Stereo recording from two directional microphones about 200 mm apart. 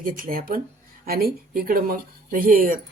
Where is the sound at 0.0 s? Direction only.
45° right (ahead or behind).